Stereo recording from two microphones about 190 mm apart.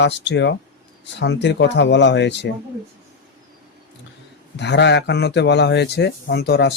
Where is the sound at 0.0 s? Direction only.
65° left (ahead or behind).